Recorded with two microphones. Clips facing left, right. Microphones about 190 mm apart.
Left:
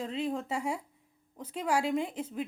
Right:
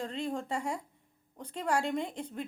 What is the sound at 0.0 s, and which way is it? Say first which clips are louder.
A woman's voice: left 2 dB; 5° left (ahead or behind).